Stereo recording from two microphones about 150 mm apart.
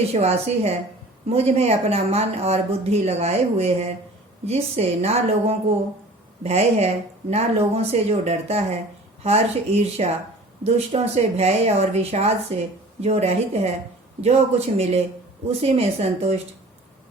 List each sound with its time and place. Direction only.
0.1 s speech: 45° right (ahead or behind)